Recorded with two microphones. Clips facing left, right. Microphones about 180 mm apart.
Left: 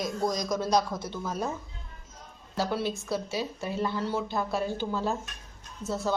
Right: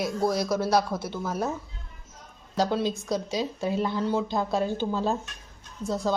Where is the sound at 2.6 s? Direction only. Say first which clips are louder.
Right 4 dB; 15° right (ahead or behind).